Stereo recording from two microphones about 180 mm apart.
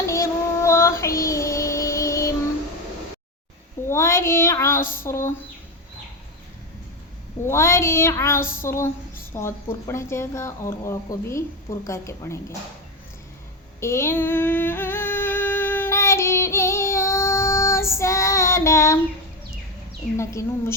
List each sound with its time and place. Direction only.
0.1 s child singing: 15° left (ahead or behind)
3.8 s child singing: 15° left (ahead or behind)
5.0 s speech: 15° left (ahead or behind)
7.4 s speech: 15° left (ahead or behind)
13.7 s a sound: 15° left (ahead or behind)
20.1 s speech: 15° left (ahead or behind)